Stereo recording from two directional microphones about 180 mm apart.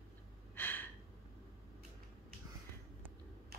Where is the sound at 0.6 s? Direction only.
10° left (ahead or behind).